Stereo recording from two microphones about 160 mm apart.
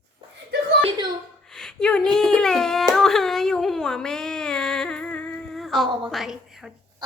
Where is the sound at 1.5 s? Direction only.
5° left (ahead or behind).